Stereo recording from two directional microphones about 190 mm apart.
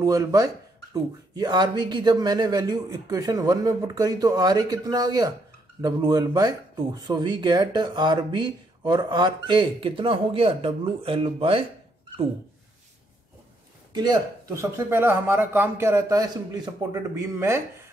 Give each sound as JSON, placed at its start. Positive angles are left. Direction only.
{"t": 0.0, "sound": "speech", "side_deg": -20}
{"t": 13.9, "sound": "speech", "side_deg": -20}